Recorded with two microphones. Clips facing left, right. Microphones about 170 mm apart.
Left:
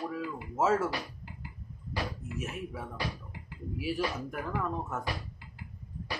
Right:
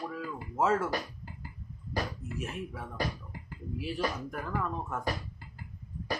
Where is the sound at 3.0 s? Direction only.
45° right (ahead or behind).